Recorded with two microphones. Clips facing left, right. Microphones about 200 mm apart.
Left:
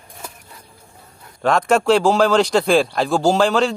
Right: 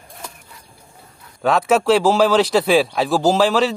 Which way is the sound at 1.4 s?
5° right (ahead or behind).